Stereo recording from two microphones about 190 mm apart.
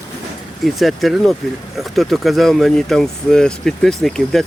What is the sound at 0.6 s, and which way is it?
Speech, centre (ahead or behind).